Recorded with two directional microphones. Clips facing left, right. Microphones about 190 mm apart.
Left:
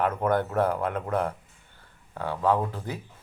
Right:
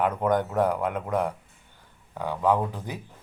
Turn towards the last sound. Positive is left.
turn(degrees=-15)  # may be behind; listen again after turning